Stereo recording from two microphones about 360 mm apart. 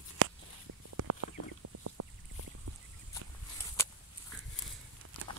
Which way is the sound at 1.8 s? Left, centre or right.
Right.